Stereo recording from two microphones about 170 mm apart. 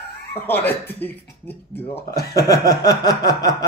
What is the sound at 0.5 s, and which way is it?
Speech, 10° left (ahead or behind).